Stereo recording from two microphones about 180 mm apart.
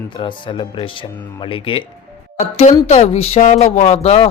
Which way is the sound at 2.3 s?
40° left (ahead or behind).